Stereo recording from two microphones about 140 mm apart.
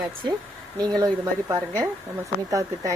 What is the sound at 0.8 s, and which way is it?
A woman's voice, 25° right (ahead or behind).